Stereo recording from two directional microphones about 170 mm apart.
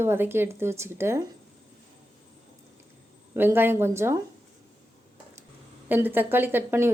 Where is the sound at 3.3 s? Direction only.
10° right (ahead or behind).